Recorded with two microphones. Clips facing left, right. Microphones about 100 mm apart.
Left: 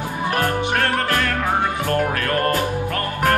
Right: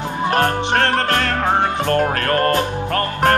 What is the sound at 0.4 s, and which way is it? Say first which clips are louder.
Music: right 3 dB; 60° right (ahead or behind).